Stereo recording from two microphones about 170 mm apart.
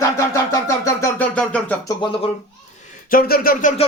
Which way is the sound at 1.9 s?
30° left (ahead or behind).